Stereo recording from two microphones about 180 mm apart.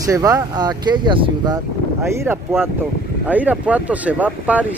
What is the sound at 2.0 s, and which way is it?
Speech, 15° right (ahead or behind).